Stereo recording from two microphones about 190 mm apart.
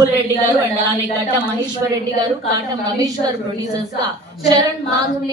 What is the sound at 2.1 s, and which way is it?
A woman's voice, 20° right (ahead or behind).